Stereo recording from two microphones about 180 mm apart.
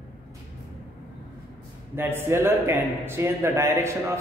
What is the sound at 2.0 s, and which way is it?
Speech, 15° right (ahead or behind).